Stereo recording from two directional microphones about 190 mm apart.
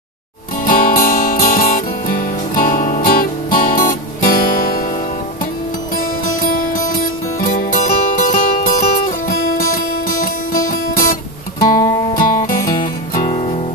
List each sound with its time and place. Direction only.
0.7 s music: 45° left (ahead or behind)
6.4 s music: 45° left (ahead or behind)
10.7 s guitar: 45° left (ahead or behind)
12.1 s music: 45° left (ahead or behind)